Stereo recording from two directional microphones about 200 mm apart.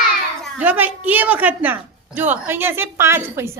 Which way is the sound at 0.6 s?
10° right (ahead or behind).